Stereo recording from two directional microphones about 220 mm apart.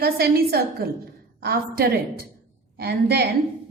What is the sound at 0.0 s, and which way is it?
A woman's voice, 45° right (ahead or behind).